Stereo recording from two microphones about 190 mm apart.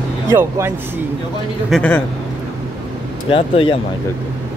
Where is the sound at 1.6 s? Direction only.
5° left (ahead or behind).